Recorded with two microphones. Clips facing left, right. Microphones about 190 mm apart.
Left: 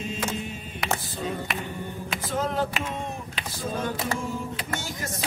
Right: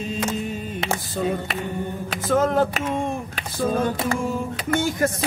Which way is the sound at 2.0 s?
50° right (ahead or behind).